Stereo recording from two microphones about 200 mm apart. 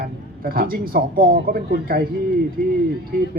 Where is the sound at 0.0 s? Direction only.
50° right (ahead or behind).